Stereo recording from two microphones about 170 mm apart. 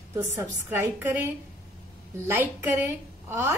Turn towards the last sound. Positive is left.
turn(degrees=-10)  # may be behind; listen again after turning